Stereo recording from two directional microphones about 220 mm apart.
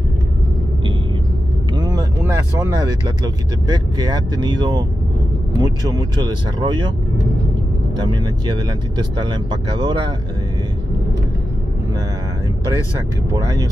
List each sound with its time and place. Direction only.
1.8 s vehicle: 15° right (ahead or behind)
3.6 s speech: 20° right (ahead or behind)
7.9 s speech: 20° right (ahead or behind)
13.3 s speech: 15° right (ahead or behind)